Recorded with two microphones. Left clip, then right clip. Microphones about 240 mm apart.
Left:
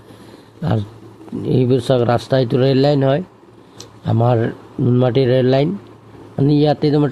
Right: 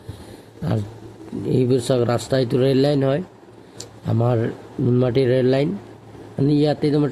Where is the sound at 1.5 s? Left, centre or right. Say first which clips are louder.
Left 3 dB; centre.